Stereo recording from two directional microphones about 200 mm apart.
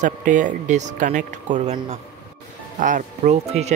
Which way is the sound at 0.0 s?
40° right (ahead or behind).